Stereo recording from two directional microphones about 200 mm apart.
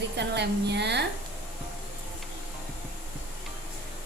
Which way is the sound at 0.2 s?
60° right (ahead or behind).